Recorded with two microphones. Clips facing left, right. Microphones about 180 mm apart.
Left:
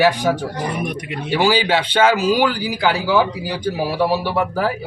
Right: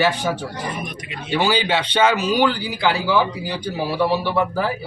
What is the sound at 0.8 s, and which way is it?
Speech, 65° left (ahead or behind).